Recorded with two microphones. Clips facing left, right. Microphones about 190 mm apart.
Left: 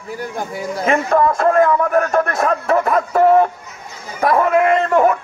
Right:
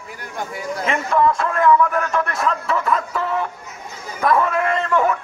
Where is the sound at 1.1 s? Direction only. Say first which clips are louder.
Left 4 dB; 45° left (ahead or behind).